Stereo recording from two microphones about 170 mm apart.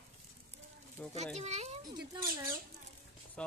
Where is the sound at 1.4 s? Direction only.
40° right (ahead or behind).